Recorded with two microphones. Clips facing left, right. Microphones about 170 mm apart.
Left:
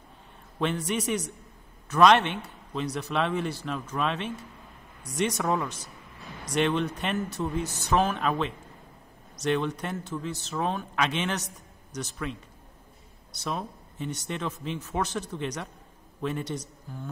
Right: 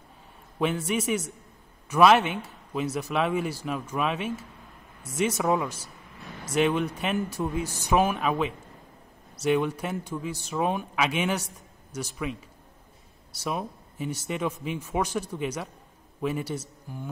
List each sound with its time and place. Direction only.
0.6 s a man's voice: 5° right (ahead or behind)
13.4 s a man's voice: 10° right (ahead or behind)